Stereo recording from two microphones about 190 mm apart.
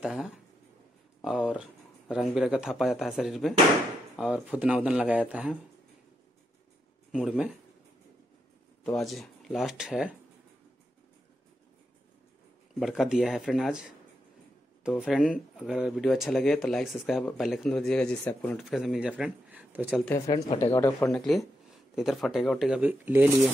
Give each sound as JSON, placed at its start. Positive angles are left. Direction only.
{"t": 0.0, "sound": "speech", "side_deg": 0}
{"t": 7.1, "sound": "speech", "side_deg": -5}
{"t": 8.8, "sound": "speech", "side_deg": 0}
{"t": 12.7, "sound": "speech", "side_deg": 0}
{"t": 20.1, "sound": "speech", "side_deg": 15}
{"t": 21.1, "sound": "speech", "side_deg": 0}